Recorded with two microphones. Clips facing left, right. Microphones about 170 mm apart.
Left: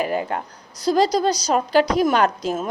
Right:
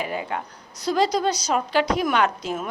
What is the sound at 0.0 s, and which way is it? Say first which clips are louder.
A woman's voice: left 5 dB; 45° left (ahead or behind).